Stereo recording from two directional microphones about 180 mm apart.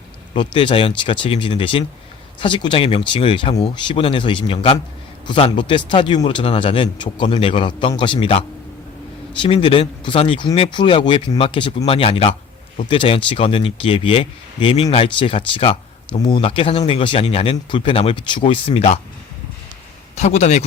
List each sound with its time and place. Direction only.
0.3 s speech: 30° left (ahead or behind)
20.1 s speech: 40° left (ahead or behind)